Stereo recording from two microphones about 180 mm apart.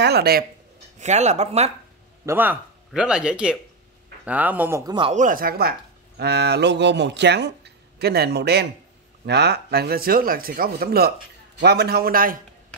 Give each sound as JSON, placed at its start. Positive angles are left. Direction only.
{"t": 0.0, "sound": "speech", "side_deg": -65}
{"t": 0.9, "sound": "speech", "side_deg": -40}
{"t": 2.2, "sound": "speech", "side_deg": -10}
{"t": 5.1, "sound": "speech", "side_deg": -50}